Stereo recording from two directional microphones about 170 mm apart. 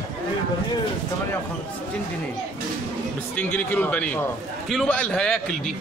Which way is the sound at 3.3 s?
10° left (ahead or behind).